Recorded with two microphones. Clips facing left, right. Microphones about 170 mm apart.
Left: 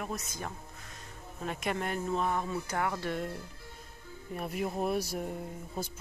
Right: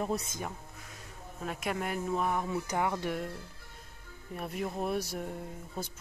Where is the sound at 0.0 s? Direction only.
30° right (ahead or behind).